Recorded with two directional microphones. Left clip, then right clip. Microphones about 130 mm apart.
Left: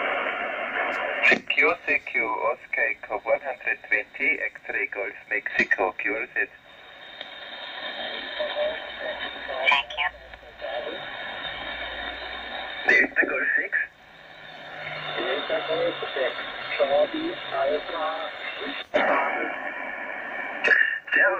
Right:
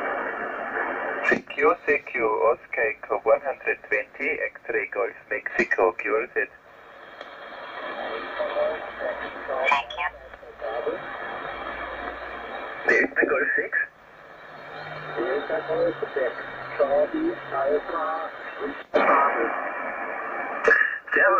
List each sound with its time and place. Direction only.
0.0 s speech: 25° right (ahead or behind)
7.8 s radio: 20° right (ahead or behind)
14.8 s speech: 20° right (ahead or behind)
19.0 s radio: 30° right (ahead or behind)